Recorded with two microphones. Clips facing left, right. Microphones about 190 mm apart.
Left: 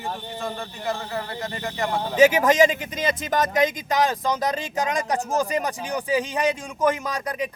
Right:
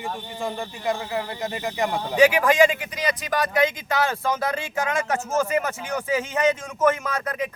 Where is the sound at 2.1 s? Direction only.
20° left (ahead or behind).